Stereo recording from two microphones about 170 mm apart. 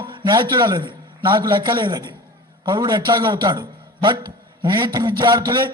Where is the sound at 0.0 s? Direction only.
25° right (ahead or behind).